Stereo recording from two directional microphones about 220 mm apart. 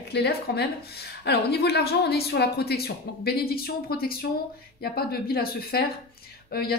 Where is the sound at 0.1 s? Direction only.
45° left (ahead or behind).